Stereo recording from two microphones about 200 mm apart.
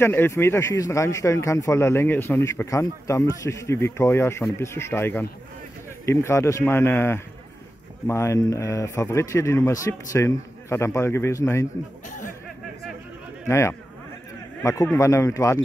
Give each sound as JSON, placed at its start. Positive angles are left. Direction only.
{"t": 0.0, "sound": "a man's voice", "side_deg": 10}
{"t": 13.5, "sound": "a man's voice", "side_deg": 15}